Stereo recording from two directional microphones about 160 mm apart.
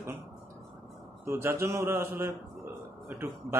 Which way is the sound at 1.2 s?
15° right (ahead or behind).